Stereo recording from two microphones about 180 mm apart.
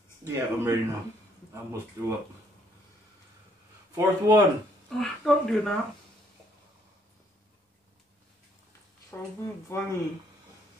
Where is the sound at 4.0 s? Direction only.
20° right (ahead or behind).